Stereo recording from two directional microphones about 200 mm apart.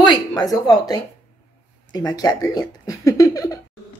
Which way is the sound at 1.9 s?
20° left (ahead or behind).